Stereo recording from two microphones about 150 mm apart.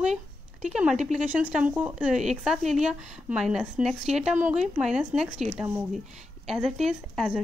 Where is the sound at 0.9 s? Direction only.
50° right (ahead or behind).